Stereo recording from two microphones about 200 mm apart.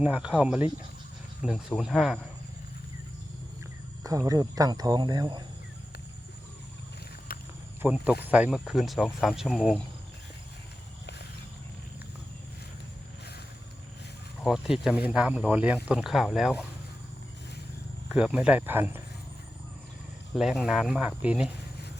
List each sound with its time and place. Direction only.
0.0 s speech: 5° right (ahead or behind)
4.0 s speech: 15° right (ahead or behind)
7.3 s cricket: 45° left (ahead or behind)
7.8 s speech: 5° right (ahead or behind)
14.4 s speech: centre (ahead or behind)
18.1 s speech: 5° right (ahead or behind)
20.3 s speech: centre (ahead or behind)